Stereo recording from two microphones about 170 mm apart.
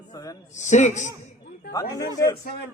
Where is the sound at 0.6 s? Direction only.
45° left (ahead or behind).